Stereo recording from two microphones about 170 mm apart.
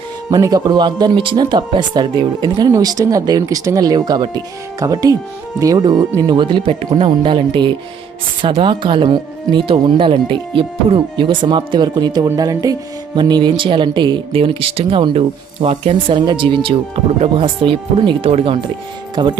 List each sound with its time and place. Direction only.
0.3 s speech: 25° right (ahead or behind)